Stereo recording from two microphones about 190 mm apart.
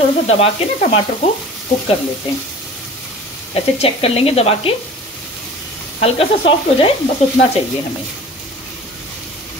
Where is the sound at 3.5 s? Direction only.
30° left (ahead or behind).